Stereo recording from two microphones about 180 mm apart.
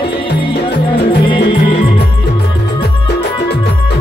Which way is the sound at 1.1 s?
25° left (ahead or behind).